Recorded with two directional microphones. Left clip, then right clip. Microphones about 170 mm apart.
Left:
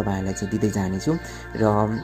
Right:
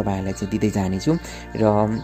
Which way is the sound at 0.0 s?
20° right (ahead or behind).